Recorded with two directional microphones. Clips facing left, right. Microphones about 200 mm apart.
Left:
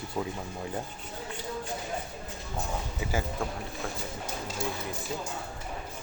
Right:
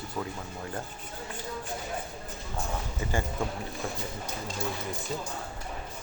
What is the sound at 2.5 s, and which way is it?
Speech, 5° left (ahead or behind).